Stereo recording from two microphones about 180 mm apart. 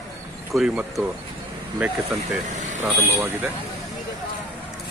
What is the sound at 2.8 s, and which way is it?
Speech, 10° right (ahead or behind).